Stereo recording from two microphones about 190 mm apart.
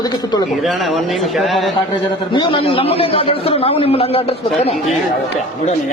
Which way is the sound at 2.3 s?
25° left (ahead or behind).